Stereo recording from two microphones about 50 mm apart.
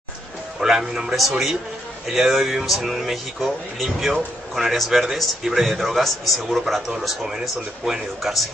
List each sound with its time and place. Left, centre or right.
0.6 s a man's voice: centre
7.8 s speech: centre